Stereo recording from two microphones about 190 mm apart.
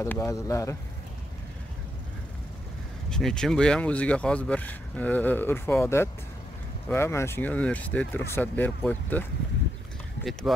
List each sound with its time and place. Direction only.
0.0 s speech: 15° left (ahead or behind)
3.1 s speech: 5° left (ahead or behind)